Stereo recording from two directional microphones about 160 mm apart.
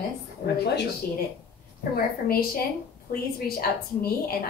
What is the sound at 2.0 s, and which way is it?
A woman's voice, 65° left (ahead or behind).